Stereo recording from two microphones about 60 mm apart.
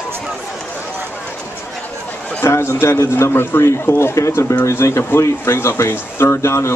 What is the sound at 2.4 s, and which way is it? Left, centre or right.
Speech, left.